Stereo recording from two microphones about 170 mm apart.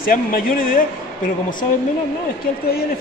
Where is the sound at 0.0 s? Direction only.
55° left (ahead or behind).